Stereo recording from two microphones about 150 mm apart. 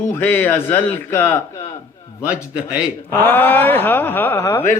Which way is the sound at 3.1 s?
15° left (ahead or behind).